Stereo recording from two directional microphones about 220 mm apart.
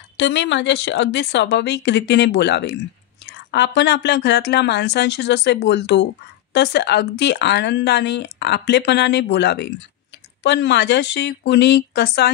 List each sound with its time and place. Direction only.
0.2 s speech: 55° left (ahead or behind)